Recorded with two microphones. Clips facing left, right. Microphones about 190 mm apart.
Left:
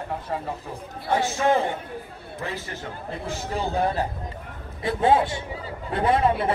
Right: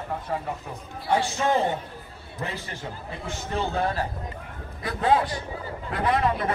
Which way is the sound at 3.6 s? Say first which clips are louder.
Left 2 dB; 15° left (ahead or behind).